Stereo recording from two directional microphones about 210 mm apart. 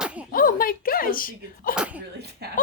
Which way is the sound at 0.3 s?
40° left (ahead or behind).